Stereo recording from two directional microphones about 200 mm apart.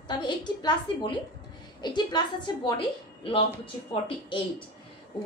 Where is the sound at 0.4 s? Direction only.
20° left (ahead or behind).